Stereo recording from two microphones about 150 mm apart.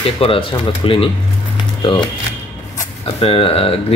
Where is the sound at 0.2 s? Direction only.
35° left (ahead or behind).